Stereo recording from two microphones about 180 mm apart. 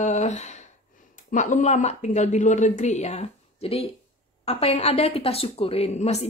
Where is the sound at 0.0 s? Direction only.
40° left (ahead or behind).